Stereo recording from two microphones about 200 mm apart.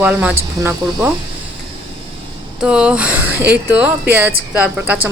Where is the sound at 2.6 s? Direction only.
5° right (ahead or behind).